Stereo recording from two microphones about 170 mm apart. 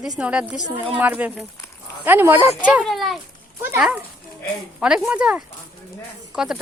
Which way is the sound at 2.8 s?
Centre (ahead or behind).